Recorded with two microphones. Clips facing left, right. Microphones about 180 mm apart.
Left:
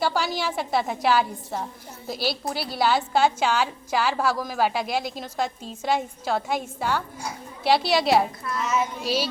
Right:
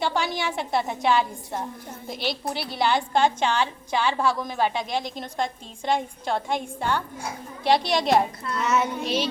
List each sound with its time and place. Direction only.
0.0 s a woman's voice: 5° left (ahead or behind)
8.6 s child singing: 65° right (ahead or behind)